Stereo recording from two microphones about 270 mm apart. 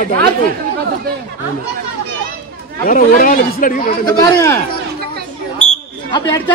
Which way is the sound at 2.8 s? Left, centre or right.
Left.